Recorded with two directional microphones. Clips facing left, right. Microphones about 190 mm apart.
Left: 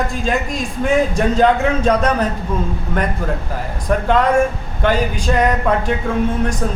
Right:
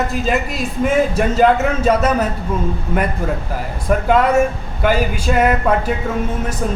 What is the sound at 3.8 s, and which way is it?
Speech, 5° right (ahead or behind).